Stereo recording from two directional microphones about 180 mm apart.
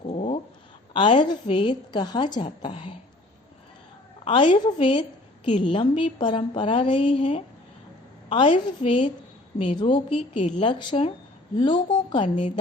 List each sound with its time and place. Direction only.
0.0 s cat: 35° left (ahead or behind)
0.9 s a woman's voice: 25° left (ahead or behind)
4.3 s a woman's voice: 30° left (ahead or behind)